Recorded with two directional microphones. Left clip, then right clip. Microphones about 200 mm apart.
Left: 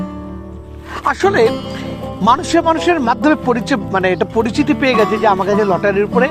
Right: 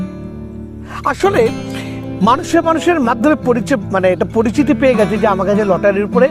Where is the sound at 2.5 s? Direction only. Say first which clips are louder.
Even; 35° right (ahead or behind).